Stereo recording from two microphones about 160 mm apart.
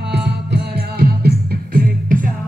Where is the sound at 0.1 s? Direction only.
90° right.